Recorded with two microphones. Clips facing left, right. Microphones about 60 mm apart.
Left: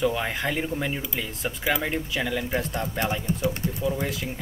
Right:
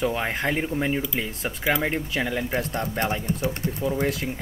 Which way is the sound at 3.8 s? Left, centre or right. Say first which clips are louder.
Right 3 dB; right.